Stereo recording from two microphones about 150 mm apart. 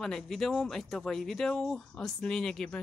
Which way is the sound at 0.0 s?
Centre (ahead or behind).